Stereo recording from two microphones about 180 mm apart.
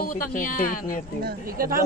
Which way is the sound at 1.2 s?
55° right (ahead or behind).